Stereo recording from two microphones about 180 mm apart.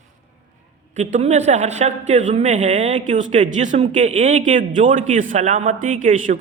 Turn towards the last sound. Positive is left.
turn(degrees=-45)  # may be behind; listen again after turning